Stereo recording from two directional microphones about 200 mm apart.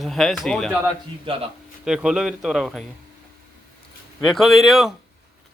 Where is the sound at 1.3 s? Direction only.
25° right (ahead or behind).